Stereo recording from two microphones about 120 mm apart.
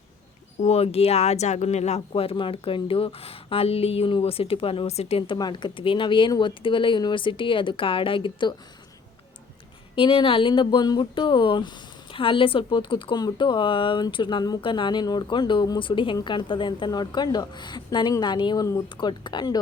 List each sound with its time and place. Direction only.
0.6 s speech: 55° left (ahead or behind)
9.9 s a woman's voice: 45° left (ahead or behind)